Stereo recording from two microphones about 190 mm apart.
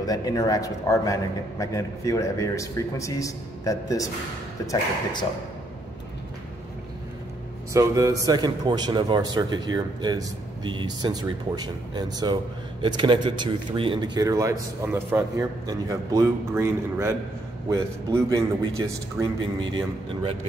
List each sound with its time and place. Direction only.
0.0 s a man's voice: 20° left (ahead or behind)
7.7 s a man's voice: 15° right (ahead or behind)